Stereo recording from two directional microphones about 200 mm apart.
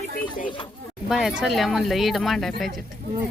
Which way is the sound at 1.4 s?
Centre (ahead or behind).